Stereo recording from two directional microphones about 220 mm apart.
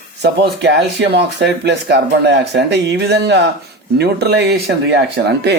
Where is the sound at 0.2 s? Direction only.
50° right (ahead or behind).